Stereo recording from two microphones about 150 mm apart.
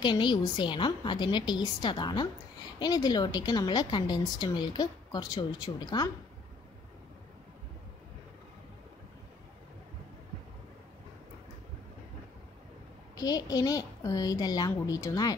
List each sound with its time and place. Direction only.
0.0 s a woman's voice: 30° left (ahead or behind)
13.1 s a woman's voice: 25° left (ahead or behind)